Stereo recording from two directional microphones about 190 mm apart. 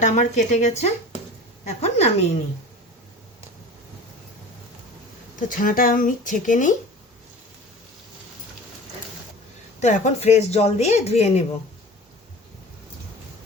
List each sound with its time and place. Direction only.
0.0 s speech: 40° left (ahead or behind)
5.4 s speech: 45° left (ahead or behind)
9.8 s speech: 35° left (ahead or behind)